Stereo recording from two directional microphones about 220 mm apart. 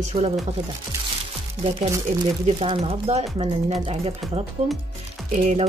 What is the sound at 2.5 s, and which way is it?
Speech, 25° right (ahead or behind).